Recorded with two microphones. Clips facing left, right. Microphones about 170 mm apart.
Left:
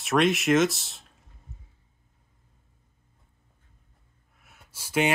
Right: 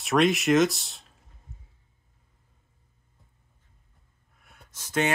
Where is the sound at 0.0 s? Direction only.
Centre (ahead or behind).